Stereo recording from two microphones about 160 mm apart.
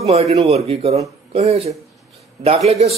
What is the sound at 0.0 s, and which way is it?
Speech, 40° right (ahead or behind).